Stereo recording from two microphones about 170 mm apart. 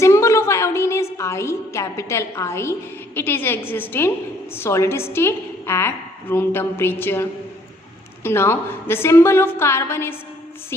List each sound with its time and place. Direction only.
0.0 s music: 15° left (ahead or behind)
3.2 s a woman's voice: 15° left (ahead or behind)